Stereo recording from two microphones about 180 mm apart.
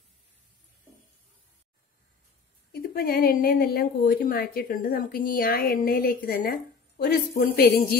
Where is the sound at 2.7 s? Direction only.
55° left (ahead or behind).